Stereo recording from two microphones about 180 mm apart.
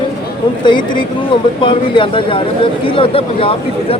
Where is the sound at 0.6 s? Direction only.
25° left (ahead or behind).